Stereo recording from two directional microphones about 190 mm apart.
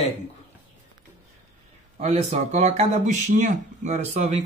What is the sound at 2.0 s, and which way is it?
Speech, 35° right (ahead or behind).